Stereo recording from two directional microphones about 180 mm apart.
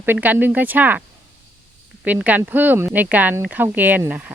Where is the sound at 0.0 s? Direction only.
10° right (ahead or behind).